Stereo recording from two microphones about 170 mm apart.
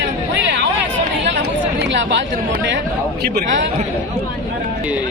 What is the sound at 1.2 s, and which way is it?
Chatter, 90° right.